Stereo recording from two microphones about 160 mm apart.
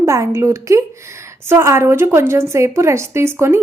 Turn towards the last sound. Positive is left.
turn(degrees=-15)  # may be behind; listen again after turning